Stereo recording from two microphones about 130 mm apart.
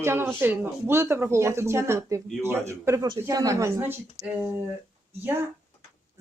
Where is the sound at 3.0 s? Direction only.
30° right (ahead or behind); by 4.5 s 15° right (ahead or behind).